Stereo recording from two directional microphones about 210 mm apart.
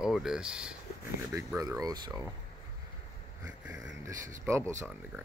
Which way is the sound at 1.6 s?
15° right (ahead or behind).